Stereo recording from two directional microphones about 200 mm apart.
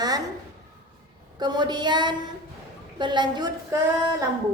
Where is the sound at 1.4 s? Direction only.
20° right (ahead or behind).